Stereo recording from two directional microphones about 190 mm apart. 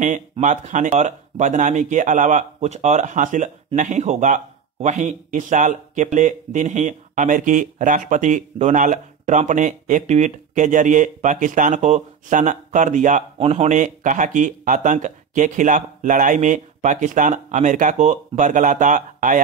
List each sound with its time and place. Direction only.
0.0 s speech: 40° right (ahead or behind)